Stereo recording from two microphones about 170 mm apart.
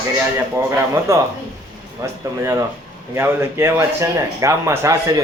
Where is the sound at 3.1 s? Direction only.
15° right (ahead or behind).